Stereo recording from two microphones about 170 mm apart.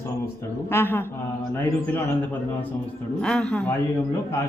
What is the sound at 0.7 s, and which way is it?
Speech, 15° left (ahead or behind).